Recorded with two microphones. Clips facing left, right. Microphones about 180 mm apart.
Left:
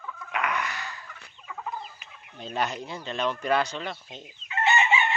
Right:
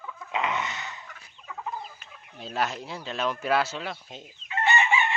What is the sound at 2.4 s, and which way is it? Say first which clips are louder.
Speech: even; 5° right (ahead or behind).